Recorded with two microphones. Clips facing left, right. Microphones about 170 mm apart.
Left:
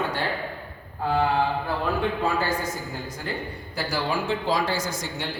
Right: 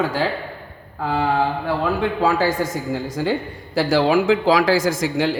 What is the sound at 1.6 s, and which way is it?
Speech, 90° right.